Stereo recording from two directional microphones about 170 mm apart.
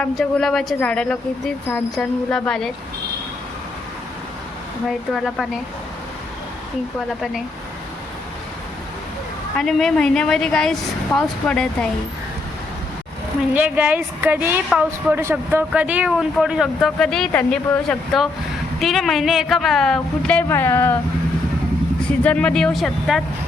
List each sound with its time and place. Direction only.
0.0 s speech: 5° left (ahead or behind)
4.9 s speech: centre (ahead or behind)
9.6 s speech: centre (ahead or behind)
13.5 s a woman's voice: 10° right (ahead or behind); by 21.0 s 15° left (ahead or behind)
22.2 s speech: 5° left (ahead or behind)